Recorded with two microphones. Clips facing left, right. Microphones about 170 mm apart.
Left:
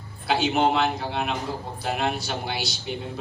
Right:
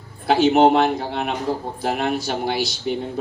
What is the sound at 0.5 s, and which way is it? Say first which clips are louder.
Speech: right 7 dB; 40° right (ahead or behind).